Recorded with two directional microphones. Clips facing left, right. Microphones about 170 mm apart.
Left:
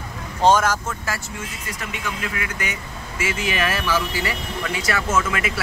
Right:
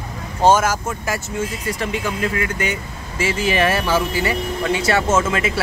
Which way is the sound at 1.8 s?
30° right (ahead or behind).